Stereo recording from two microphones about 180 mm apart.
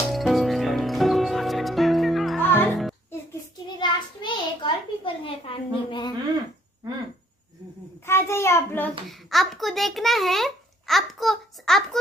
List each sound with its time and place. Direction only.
0.1 s music: centre (ahead or behind)
3.6 s a sound: 25° left (ahead or behind)
8.0 s child singing: 15° left (ahead or behind)
9.3 s a child's voice: centre (ahead or behind)